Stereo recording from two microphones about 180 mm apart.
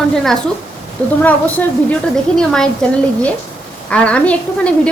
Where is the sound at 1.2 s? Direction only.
10° left (ahead or behind).